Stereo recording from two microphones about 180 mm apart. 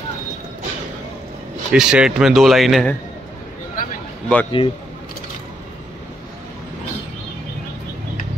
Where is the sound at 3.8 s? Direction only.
50° left (ahead or behind).